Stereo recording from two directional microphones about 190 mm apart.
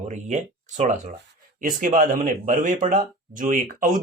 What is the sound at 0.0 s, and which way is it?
Speech, 35° right (ahead or behind).